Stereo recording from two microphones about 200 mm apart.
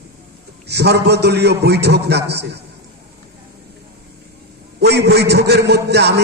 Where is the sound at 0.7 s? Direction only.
55° right (ahead or behind).